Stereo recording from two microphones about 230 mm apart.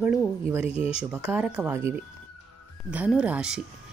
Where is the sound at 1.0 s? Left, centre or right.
Centre.